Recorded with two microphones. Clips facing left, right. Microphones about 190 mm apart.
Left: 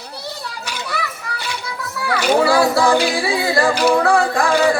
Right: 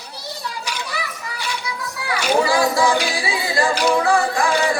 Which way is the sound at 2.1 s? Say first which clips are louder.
Left 3 dB; 60° left (ahead or behind).